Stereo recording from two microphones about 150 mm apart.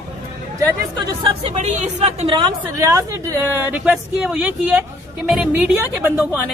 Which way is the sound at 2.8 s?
20° right (ahead or behind).